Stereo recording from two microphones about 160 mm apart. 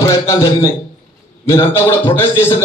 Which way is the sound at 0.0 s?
20° left (ahead or behind).